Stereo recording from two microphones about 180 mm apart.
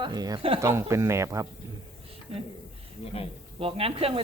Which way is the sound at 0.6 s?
15° right (ahead or behind).